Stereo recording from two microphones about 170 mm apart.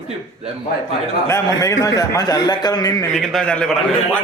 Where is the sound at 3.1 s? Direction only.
5° left (ahead or behind).